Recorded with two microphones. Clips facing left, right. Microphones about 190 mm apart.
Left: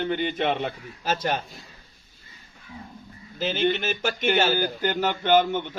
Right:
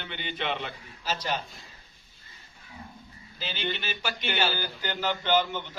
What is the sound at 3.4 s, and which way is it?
A man's voice, 50° left (ahead or behind).